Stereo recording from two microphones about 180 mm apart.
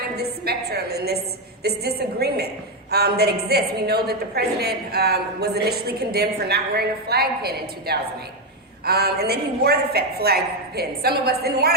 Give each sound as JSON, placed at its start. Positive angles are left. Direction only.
{"t": 0.2, "sound": "a woman's voice", "side_deg": -60}